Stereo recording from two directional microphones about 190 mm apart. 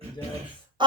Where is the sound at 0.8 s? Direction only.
25° right (ahead or behind).